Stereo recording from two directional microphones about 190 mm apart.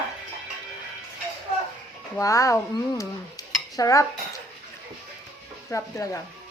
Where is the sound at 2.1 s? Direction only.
15° left (ahead or behind).